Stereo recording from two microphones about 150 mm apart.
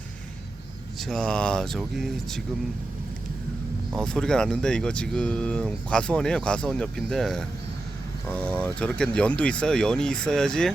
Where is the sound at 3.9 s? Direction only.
5° left (ahead or behind).